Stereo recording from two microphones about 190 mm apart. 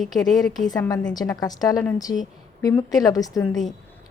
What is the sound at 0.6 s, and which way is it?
A woman's voice, 20° left (ahead or behind).